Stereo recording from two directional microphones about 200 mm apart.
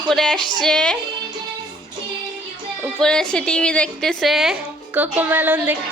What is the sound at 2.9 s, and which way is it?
A woman's voice, 5° left (ahead or behind).